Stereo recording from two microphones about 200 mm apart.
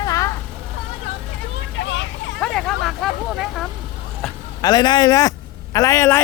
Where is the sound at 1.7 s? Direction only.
70° left (ahead or behind).